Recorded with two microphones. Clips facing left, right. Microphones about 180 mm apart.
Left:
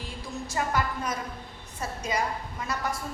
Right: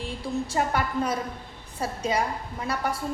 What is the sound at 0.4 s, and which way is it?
A woman's voice, 30° right (ahead or behind).